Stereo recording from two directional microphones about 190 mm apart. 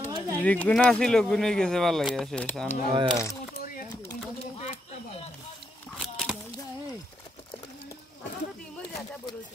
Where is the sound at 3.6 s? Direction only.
45° left (ahead or behind).